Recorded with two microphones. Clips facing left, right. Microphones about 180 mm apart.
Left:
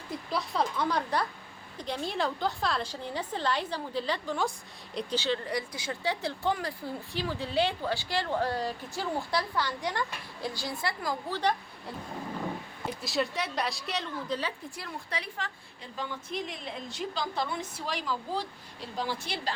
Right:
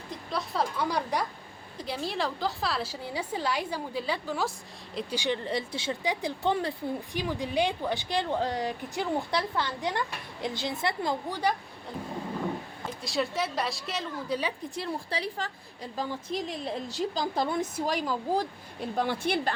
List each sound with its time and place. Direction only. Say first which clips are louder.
0.3 s a woman's voice: even; centre (ahead or behind)
0.8 s a woman's voice: even; 10° right (ahead or behind)
5.1 s speech: right 1 dB; 15° right (ahead or behind)
13.0 s a woman's voice: right 2 dB; centre (ahead or behind)
14.8 s a woman's voice: right 8 dB; 30° right (ahead or behind); by 19.5 s 55° right (ahead or behind)